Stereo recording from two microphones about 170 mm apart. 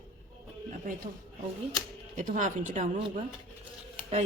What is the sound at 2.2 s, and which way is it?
Speech, 50° right (ahead or behind).